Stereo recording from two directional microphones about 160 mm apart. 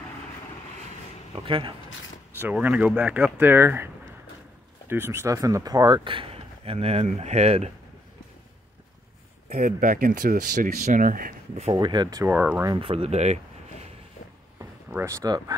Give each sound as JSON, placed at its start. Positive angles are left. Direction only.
{"t": 1.3, "sound": "speech", "side_deg": -35}
{"t": 2.3, "sound": "speech", "side_deg": -10}
{"t": 9.5, "sound": "speech", "side_deg": -55}
{"t": 11.7, "sound": "speech", "side_deg": -25}
{"t": 12.3, "sound": "speech", "side_deg": -10}
{"t": 12.7, "sound": "speech", "side_deg": -35}
{"t": 14.6, "sound": "a sound", "side_deg": -15}